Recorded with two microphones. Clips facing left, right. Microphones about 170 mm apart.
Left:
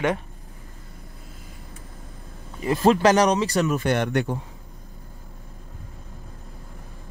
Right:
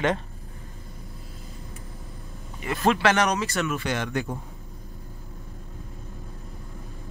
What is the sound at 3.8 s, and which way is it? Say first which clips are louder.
Speech: left 5 dB; 60° left (ahead or behind).